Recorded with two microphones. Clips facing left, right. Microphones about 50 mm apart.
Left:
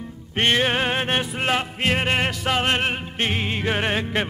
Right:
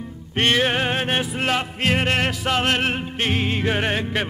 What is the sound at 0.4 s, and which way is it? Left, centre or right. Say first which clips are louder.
Music: right 1 dB; centre.